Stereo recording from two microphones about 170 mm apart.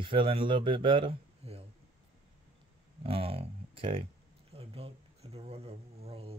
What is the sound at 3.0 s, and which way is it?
Speech, 35° right (ahead or behind).